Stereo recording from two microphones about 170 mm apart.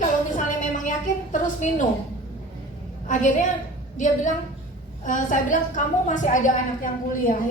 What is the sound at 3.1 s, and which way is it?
A woman's voice, 45° left (ahead or behind).